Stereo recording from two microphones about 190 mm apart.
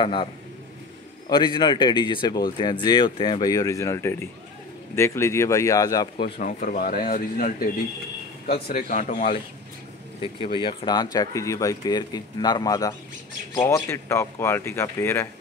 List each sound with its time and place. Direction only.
0.0 s speech: 25° left (ahead or behind)
1.3 s speech: 25° left (ahead or behind)
6.3 s speech: 45° left (ahead or behind)
8.7 s speech: 45° left (ahead or behind)
10.2 s speech: 25° left (ahead or behind)